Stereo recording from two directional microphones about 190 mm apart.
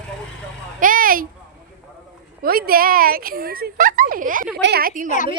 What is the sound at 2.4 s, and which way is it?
Speech, 50° right (ahead or behind).